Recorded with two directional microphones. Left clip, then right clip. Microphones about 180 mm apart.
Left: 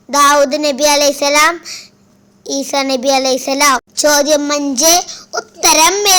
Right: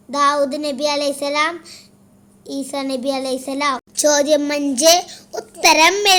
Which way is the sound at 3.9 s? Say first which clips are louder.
Left 4 dB; 5° left (ahead or behind).